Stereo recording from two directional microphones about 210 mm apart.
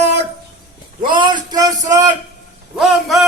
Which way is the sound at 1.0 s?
20° right (ahead or behind).